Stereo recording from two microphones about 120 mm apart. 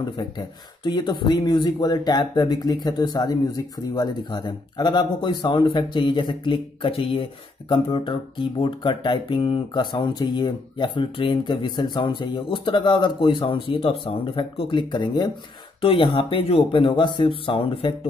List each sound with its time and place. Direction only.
0.0 s speech: 40° left (ahead or behind)
16.8 s speech: 45° left (ahead or behind)